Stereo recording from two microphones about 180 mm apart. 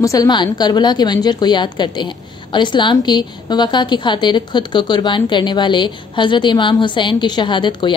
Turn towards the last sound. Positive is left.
turn(degrees=25)  # may be behind; listen again after turning